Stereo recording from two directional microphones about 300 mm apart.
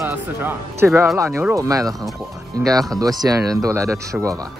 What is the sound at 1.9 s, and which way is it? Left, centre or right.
Speech, centre.